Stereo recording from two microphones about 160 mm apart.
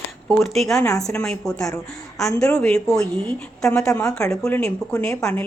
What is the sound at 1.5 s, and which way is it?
Speech, 20° left (ahead or behind).